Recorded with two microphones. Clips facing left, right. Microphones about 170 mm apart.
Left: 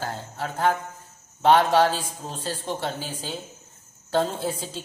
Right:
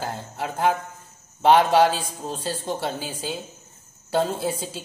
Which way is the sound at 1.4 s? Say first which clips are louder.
Right 2 dB; 15° right (ahead or behind).